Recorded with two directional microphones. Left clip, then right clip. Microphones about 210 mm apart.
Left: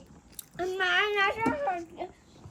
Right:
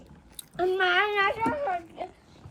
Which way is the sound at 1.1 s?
Centre (ahead or behind).